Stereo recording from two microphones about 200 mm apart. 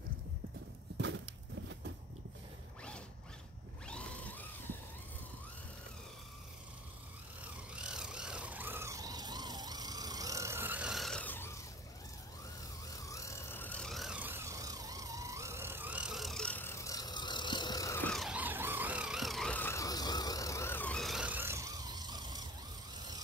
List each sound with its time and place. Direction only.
0.9 s clip-clop: 65° right (ahead or behind)
3.8 s a sound: 5° left (ahead or behind)
7.7 s vehicle: 5° right (ahead or behind); by 11.6 s 10° left (ahead or behind)
13.0 s vehicle: 15° left (ahead or behind)
18.1 s vehicle: 5° right (ahead or behind); by 22.4 s 20° right (ahead or behind)